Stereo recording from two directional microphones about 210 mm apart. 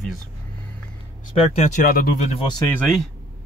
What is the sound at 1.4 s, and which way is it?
Speech, 30° left (ahead or behind).